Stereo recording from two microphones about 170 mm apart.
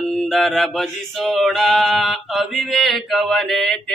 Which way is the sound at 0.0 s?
Centre (ahead or behind).